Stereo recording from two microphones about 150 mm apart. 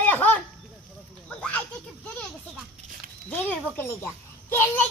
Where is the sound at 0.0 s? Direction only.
10° left (ahead or behind).